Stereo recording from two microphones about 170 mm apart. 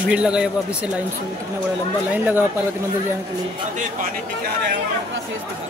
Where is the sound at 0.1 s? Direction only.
5° right (ahead or behind).